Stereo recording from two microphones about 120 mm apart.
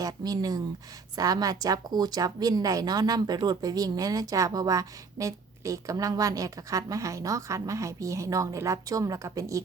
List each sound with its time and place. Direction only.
0.0 s a woman's voice: 30° right (ahead or behind)